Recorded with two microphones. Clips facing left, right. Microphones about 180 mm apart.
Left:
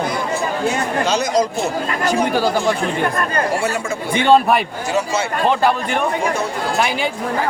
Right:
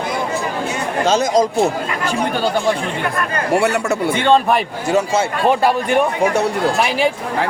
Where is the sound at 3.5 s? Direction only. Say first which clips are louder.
Right 5 dB; 65° right (ahead or behind).